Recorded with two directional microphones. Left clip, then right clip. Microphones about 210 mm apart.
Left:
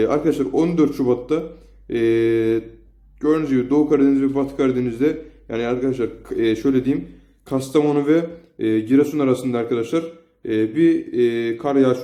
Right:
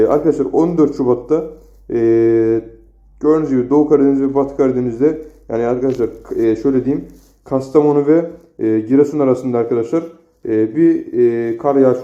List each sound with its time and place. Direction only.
0.0 s speech: 15° left (ahead or behind)